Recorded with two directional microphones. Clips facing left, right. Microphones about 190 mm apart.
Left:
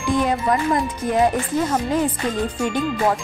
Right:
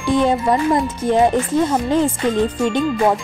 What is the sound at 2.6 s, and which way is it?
Speech, 25° right (ahead or behind).